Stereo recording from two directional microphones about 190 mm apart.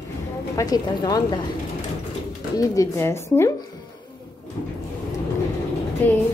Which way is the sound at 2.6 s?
15° left (ahead or behind).